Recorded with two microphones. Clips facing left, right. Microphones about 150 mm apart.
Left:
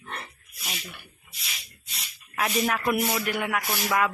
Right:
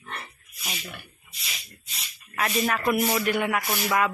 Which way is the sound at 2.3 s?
10° left (ahead or behind).